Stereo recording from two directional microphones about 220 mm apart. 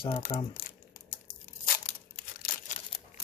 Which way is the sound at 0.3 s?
25° left (ahead or behind).